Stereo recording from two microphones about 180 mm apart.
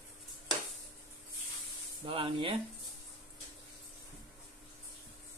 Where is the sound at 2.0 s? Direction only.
30° right (ahead or behind).